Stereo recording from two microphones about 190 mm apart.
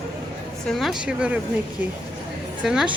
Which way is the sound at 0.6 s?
Centre (ahead or behind).